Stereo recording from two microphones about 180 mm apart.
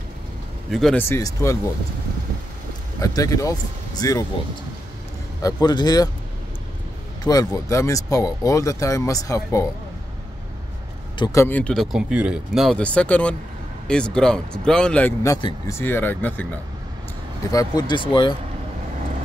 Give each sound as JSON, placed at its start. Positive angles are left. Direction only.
{"t": 0.7, "sound": "speech", "side_deg": 0}
{"t": 1.0, "sound": "speech", "side_deg": 15}
{"t": 3.0, "sound": "speech", "side_deg": 20}
{"t": 5.4, "sound": "speech", "side_deg": 25}
{"t": 7.2, "sound": "speech", "side_deg": 20}
{"t": 11.1, "sound": "speech", "side_deg": 20}
{"t": 15.2, "sound": "speech", "side_deg": 20}
{"t": 17.5, "sound": "speech", "side_deg": 20}